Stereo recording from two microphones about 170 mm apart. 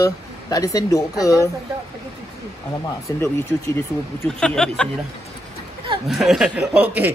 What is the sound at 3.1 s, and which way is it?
Speech, 15° left (ahead or behind).